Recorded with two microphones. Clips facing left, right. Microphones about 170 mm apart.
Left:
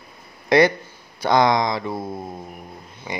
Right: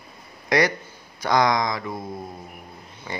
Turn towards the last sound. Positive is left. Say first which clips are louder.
# left 3 dB
turn(degrees=15)  # may be behind; listen again after turning